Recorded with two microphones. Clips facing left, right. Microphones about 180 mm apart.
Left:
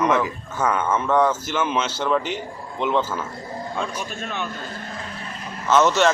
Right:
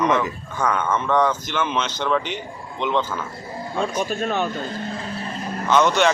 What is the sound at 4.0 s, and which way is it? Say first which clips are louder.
Speech: right 7 dB; 40° right (ahead or behind).